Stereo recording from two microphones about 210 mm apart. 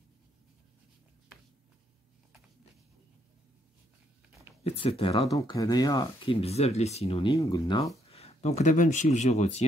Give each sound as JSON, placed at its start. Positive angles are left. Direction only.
{"t": 4.6, "sound": "speech", "side_deg": 25}
{"t": 5.3, "sound": "speech", "side_deg": 15}
{"t": 7.3, "sound": "speech", "side_deg": 15}
{"t": 8.1, "sound": "speech", "side_deg": 30}